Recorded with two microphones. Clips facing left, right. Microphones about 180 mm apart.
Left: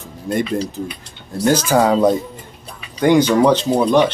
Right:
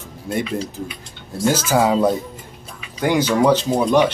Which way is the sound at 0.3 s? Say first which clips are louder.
Left 4 dB; 10° right (ahead or behind).